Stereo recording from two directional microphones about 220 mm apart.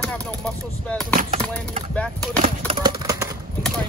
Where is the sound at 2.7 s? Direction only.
20° right (ahead or behind).